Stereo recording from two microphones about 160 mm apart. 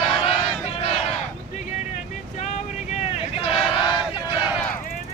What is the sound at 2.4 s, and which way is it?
Vehicle, 45° left (ahead or behind).